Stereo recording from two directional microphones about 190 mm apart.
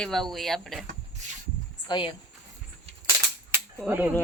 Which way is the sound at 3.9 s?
10° right (ahead or behind).